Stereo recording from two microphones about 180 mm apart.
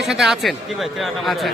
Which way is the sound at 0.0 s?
Centre (ahead or behind).